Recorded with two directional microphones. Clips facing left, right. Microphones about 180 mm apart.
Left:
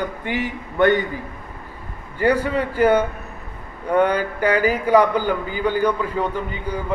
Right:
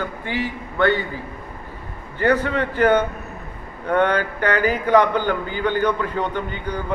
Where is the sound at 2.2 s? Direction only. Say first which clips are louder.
Even; 10° left (ahead or behind).